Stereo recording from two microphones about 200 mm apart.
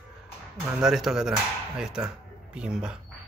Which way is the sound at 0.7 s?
Centre (ahead or behind).